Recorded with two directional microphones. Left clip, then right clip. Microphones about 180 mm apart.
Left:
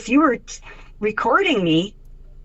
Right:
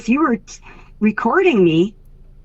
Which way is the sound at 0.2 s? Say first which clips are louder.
Left 1 dB; 45° right (ahead or behind).